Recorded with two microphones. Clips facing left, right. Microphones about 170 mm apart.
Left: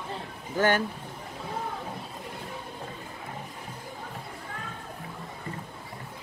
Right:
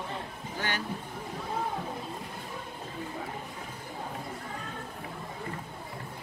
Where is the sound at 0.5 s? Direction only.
50° left (ahead or behind).